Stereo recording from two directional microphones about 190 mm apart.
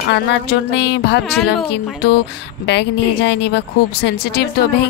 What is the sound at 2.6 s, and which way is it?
A woman's voice, 65° left (ahead or behind).